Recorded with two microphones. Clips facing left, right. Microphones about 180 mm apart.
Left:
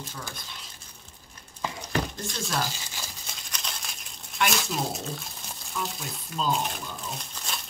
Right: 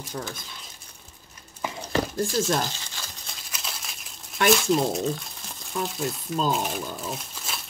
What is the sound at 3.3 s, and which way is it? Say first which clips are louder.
Crumpling: right 1 dB; 5° right (ahead or behind).